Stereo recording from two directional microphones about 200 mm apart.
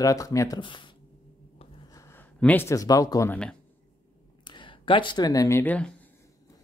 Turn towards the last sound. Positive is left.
turn(degrees=5)  # may be behind; listen again after turning